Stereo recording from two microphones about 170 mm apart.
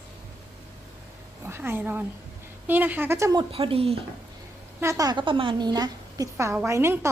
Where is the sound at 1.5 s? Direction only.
15° right (ahead or behind).